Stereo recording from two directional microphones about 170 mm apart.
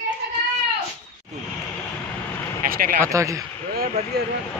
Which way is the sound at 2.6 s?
50° right (ahead or behind).